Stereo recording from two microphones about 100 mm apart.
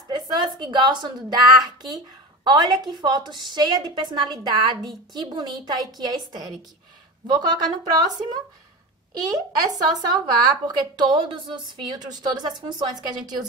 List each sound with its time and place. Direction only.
0.1 s a woman's voice: 45° right (ahead or behind)